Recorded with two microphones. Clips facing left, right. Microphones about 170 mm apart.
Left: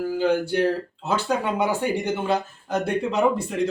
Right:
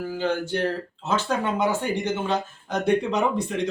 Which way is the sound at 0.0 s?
10° left (ahead or behind).